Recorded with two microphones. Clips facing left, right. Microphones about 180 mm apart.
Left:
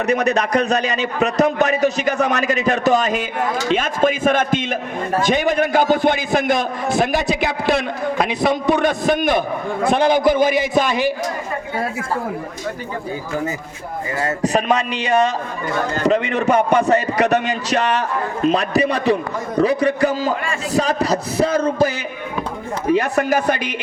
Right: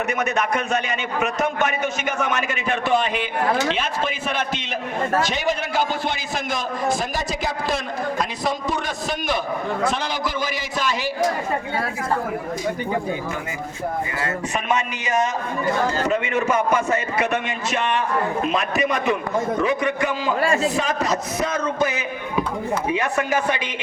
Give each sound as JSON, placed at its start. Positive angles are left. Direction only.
{"t": 0.0, "sound": "a man's voice", "side_deg": 35}
{"t": 14.2, "sound": "a man's voice", "side_deg": 40}